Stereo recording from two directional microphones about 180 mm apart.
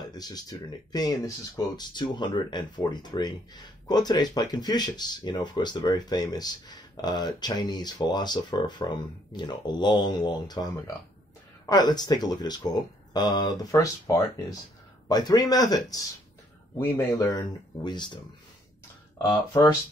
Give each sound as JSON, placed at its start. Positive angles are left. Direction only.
{"t": 0.0, "sound": "speech", "side_deg": 20}
{"t": 19.2, "sound": "speech", "side_deg": 20}